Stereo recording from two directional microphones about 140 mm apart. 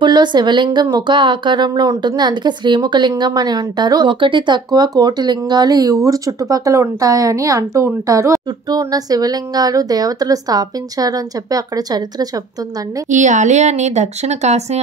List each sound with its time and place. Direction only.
0.0 s speech: 30° right (ahead or behind)
13.1 s speech: 60° right (ahead or behind)